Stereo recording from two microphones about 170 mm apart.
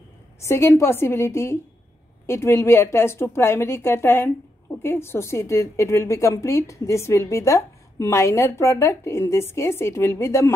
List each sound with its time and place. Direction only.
0.4 s a woman's voice: 15° left (ahead or behind)